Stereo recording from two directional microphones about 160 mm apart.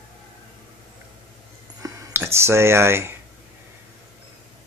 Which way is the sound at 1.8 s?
15° right (ahead or behind).